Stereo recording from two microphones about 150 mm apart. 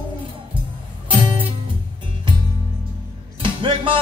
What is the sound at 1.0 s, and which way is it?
Music, 35° right (ahead or behind).